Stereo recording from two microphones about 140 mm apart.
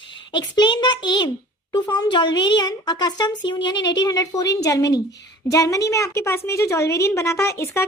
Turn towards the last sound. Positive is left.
turn(degrees=20)  # may be behind; listen again after turning